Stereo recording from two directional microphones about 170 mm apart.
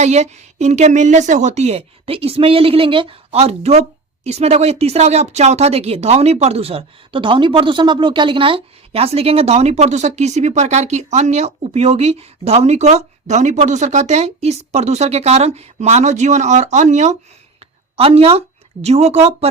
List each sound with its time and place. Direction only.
0.0 s a woman's voice: 40° right (ahead or behind)